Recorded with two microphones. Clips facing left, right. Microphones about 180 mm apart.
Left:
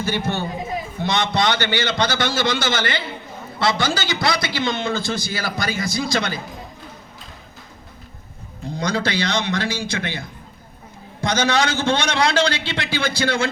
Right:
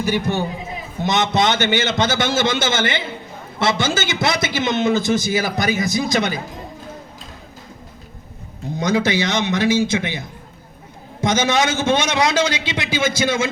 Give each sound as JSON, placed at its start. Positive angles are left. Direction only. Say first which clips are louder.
{"t": 0.0, "sound": "a man's voice", "louder": "right 3 dB", "side_deg": -15}
{"t": 8.7, "sound": "a man's voice", "louder": "right 4 dB", "side_deg": -20}